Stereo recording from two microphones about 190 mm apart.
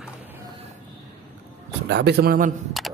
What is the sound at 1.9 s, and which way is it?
Speech, 55° right (ahead or behind).